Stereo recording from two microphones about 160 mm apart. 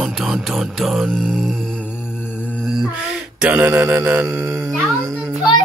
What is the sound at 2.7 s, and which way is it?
Mantra, 5° right (ahead or behind).